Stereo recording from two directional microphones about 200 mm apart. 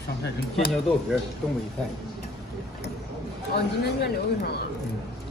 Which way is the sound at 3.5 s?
55° left (ahead or behind).